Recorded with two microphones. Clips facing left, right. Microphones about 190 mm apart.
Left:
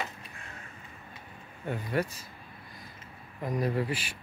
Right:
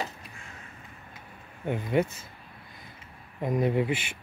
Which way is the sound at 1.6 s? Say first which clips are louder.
Right 5 dB; 20° right (ahead or behind).